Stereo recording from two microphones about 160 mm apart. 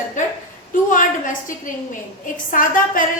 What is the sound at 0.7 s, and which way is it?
A woman's voice, 55° left (ahead or behind).